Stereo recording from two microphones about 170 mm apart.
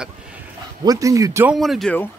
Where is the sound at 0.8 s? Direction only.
20° right (ahead or behind).